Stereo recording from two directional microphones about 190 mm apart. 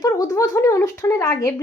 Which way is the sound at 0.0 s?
15° left (ahead or behind).